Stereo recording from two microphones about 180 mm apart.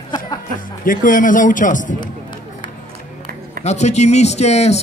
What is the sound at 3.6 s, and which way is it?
Speech, 40° left (ahead or behind).